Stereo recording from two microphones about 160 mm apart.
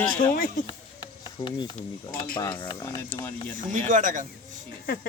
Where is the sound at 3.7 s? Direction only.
55° right (ahead or behind).